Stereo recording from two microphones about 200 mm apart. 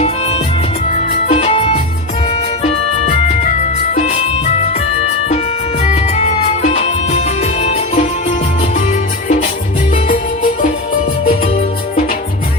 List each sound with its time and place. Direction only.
1.3 s music: 30° left (ahead or behind)
5.8 s music: 35° left (ahead or behind)